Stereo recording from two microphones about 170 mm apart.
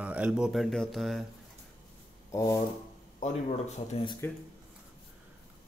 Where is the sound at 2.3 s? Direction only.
20° left (ahead or behind).